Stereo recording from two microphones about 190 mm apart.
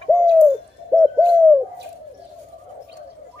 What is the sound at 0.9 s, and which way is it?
Bird, 5° right (ahead or behind).